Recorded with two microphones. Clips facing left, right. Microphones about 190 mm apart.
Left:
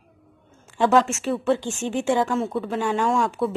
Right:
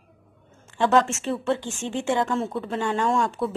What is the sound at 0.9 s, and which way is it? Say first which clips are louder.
Speech: left 2 dB; centre (ahead or behind).